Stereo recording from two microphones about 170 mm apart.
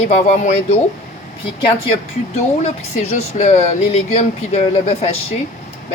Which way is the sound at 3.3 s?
45° left (ahead or behind).